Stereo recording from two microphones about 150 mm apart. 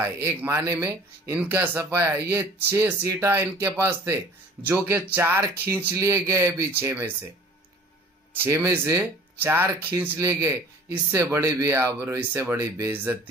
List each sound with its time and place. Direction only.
0.0 s speech: 15° right (ahead or behind)
8.4 s speech: 20° right (ahead or behind)